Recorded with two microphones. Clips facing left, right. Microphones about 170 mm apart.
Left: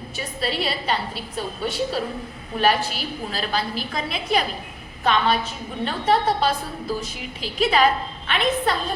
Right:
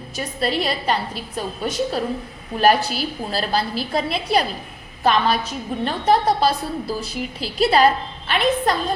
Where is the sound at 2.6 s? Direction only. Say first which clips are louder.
Right 4 dB; 35° right (ahead or behind).